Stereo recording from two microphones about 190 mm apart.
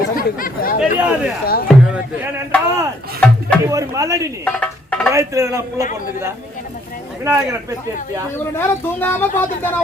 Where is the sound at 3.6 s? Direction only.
15° right (ahead or behind).